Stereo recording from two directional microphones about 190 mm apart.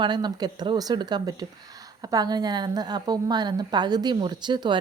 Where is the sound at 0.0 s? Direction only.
25° right (ahead or behind).